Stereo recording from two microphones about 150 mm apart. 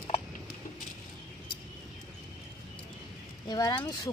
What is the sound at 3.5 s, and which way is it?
Speech, 25° left (ahead or behind).